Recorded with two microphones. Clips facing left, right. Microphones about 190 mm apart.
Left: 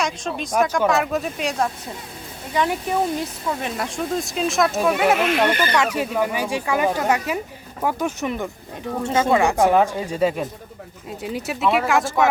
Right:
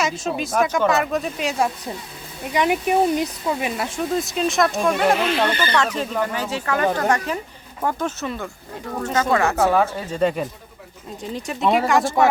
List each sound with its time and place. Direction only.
0.0 s speech: 5° right (ahead or behind)
2.5 s speech: 15° right (ahead or behind)
3.8 s speech: 5° right (ahead or behind); by 9.4 s 25° left (ahead or behind)
9.4 s speech: 15° left (ahead or behind)
11.6 s speech: 35° right (ahead or behind)
11.9 s speech: centre (ahead or behind)